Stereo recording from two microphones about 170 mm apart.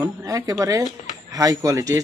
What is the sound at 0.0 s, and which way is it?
A man's voice, 20° right (ahead or behind).